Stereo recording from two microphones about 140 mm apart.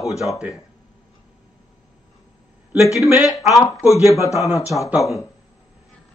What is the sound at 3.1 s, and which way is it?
Speech, centre (ahead or behind).